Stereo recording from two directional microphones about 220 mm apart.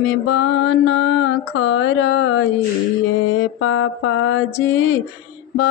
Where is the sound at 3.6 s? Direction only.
65° left (ahead or behind).